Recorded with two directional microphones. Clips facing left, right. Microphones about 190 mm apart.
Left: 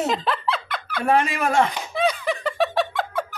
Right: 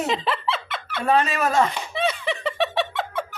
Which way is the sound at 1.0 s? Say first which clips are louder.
Even; 10° left (ahead or behind).